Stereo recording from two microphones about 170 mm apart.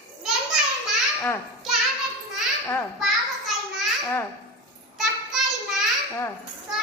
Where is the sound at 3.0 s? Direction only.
Centre (ahead or behind).